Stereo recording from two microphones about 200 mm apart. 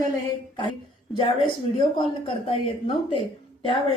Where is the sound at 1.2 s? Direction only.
25° left (ahead or behind).